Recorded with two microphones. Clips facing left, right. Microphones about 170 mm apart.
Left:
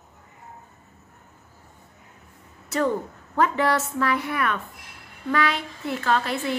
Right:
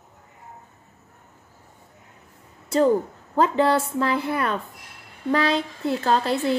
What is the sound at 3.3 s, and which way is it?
A woman's voice, 30° right (ahead or behind).